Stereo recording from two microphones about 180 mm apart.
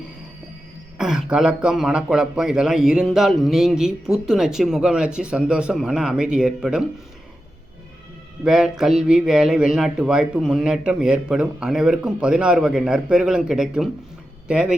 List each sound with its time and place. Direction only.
0.9 s a man's voice: 5° right (ahead or behind)
8.4 s a man's voice: centre (ahead or behind)